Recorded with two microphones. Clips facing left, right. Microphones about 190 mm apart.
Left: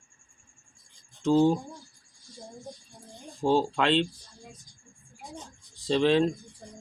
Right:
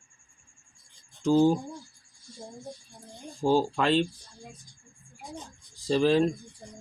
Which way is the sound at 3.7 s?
5° right (ahead or behind).